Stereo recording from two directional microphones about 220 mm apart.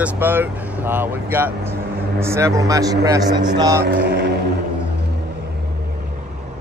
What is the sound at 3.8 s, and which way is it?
Vehicle, 50° right (ahead or behind).